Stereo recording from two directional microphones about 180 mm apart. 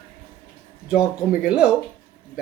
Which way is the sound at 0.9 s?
5° right (ahead or behind).